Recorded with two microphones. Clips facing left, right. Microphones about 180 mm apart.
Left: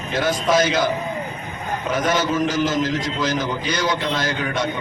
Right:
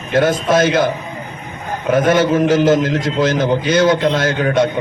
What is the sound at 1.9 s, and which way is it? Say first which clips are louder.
A man's voice: right 8 dB; 55° right (ahead or behind).